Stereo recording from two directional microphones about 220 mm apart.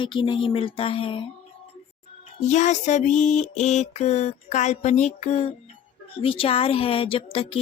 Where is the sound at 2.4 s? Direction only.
30° left (ahead or behind).